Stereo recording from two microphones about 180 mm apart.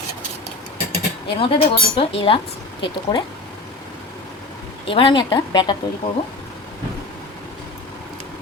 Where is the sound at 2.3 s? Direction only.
30° left (ahead or behind).